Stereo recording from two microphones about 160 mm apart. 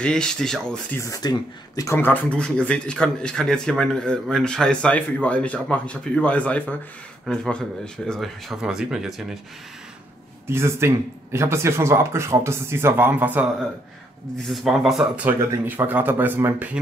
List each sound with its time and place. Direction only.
0.0 s speech: 5° left (ahead or behind)
0.9 s speech: 20° left (ahead or behind); by 9.4 s 5° right (ahead or behind)
10.4 s speech: 15° right (ahead or behind)
14.5 s speech: centre (ahead or behind)